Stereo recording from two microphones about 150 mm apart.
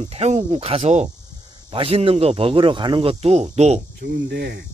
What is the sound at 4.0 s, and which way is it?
Speech, 90° right.